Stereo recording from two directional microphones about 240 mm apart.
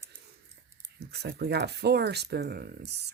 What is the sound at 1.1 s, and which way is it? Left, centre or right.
Speech, right.